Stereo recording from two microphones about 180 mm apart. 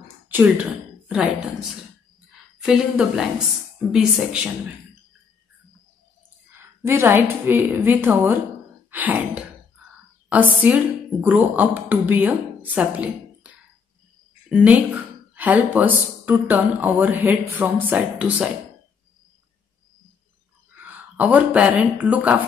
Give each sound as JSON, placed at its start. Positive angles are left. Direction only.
{"t": 0.3, "sound": "a woman's voice", "side_deg": -10}
{"t": 6.8, "sound": "a woman's voice", "side_deg": -15}
{"t": 14.5, "sound": "speech", "side_deg": -5}
{"t": 20.7, "sound": "speech", "side_deg": -10}